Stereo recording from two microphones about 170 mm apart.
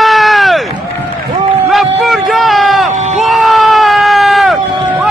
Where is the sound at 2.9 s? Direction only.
45° right (ahead or behind).